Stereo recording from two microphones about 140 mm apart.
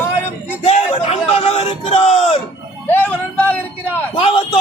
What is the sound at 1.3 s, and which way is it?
A man's voice, 45° left (ahead or behind).